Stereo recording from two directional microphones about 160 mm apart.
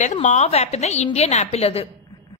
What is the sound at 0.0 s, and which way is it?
A woman's voice, 50° left (ahead or behind).